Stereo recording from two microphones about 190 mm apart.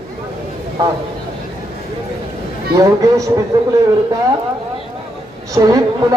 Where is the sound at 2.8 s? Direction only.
15° right (ahead or behind).